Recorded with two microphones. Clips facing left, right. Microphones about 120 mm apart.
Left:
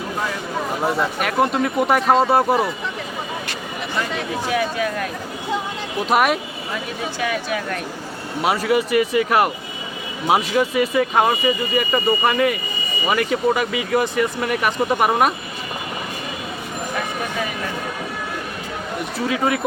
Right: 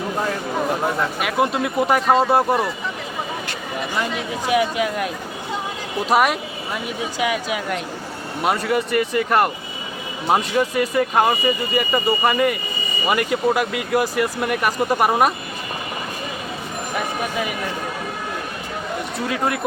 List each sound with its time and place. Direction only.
0.9 s speech: centre (ahead or behind)
4.4 s speech: 15° right (ahead or behind)
6.1 s speech: centre (ahead or behind)
7.2 s speech: 15° right (ahead or behind)
8.4 s speech: centre (ahead or behind)
19.2 s speech: centre (ahead or behind)